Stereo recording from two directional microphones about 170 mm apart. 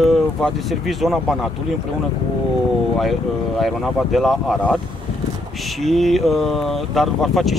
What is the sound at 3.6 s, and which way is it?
Speech, centre (ahead or behind).